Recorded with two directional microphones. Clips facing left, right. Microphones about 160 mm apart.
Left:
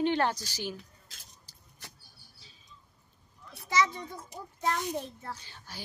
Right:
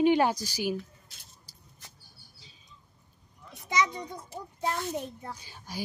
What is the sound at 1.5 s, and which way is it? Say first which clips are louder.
Vehicle: right 2 dB; 10° right (ahead or behind).